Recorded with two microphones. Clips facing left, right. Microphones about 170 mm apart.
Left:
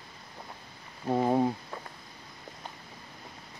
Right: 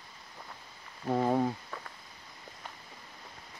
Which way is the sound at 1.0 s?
15° left (ahead or behind).